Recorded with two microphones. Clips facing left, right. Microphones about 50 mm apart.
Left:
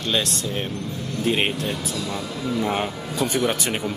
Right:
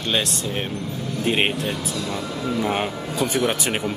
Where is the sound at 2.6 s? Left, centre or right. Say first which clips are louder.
Even; centre.